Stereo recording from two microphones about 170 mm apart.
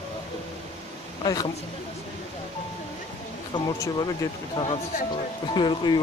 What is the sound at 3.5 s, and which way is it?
Speech, 20° left (ahead or behind).